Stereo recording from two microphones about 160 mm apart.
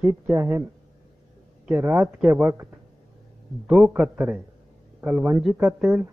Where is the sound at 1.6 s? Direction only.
5° right (ahead or behind).